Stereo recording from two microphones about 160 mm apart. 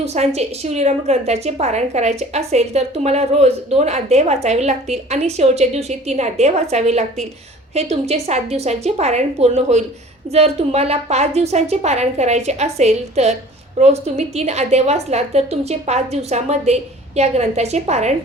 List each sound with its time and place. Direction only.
0.0 s a woman's voice: 45° right (ahead or behind)